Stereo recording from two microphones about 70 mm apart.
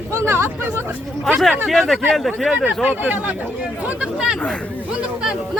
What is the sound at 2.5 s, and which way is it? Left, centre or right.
Speech, centre.